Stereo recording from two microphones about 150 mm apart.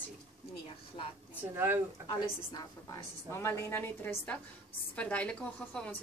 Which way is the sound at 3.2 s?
15° left (ahead or behind).